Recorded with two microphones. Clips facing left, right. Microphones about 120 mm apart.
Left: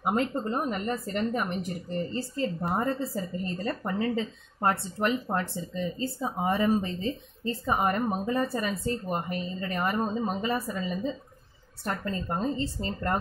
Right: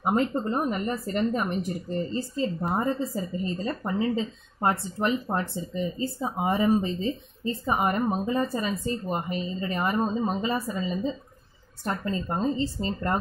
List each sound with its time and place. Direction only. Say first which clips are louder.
0.1 s speech: right 3 dB; 30° right (ahead or behind)